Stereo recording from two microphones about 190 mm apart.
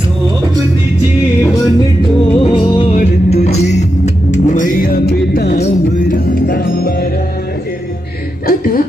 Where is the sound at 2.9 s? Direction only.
35° left (ahead or behind); by 7.1 s 50° left (ahead or behind).